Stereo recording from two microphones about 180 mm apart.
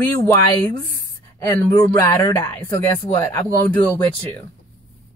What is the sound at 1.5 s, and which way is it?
Speech, 20° left (ahead or behind).